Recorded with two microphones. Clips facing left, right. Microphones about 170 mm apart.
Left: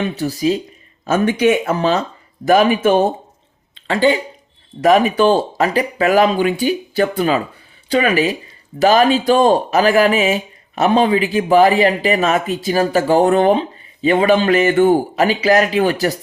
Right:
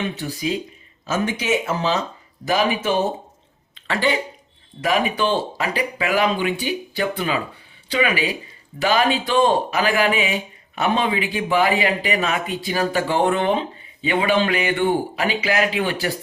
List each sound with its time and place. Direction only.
0.1 s speech: 40° left (ahead or behind)
1.0 s speech: 55° left (ahead or behind)
3.8 s speech: 30° left (ahead or behind)
4.8 s speech: 45° left (ahead or behind)